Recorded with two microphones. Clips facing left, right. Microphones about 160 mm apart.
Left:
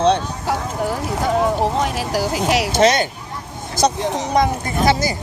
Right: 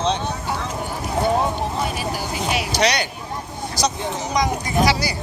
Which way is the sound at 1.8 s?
90° left.